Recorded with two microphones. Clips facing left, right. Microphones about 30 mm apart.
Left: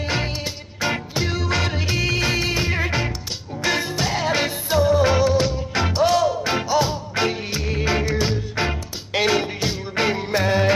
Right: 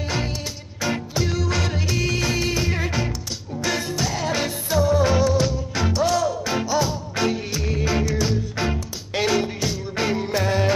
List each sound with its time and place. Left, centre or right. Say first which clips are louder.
0.7 s music: left 1 dB; left